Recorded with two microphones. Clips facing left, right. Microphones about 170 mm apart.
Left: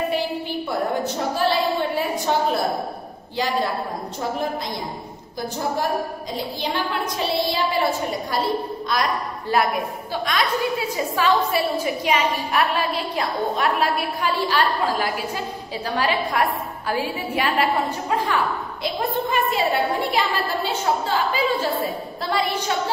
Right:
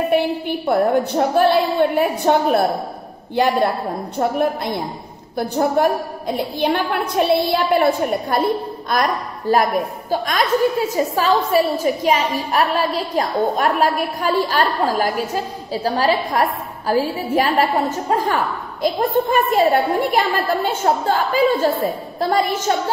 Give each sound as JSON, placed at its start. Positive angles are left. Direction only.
{"t": 0.1, "sound": "a woman's voice", "side_deg": -60}